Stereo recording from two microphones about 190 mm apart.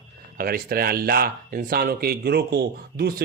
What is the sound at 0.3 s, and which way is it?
Speech, 50° right (ahead or behind).